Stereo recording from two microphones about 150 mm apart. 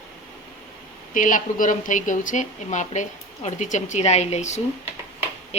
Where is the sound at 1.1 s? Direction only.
60° left (ahead or behind).